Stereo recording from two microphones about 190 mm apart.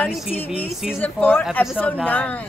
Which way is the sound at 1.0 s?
10° left (ahead or behind).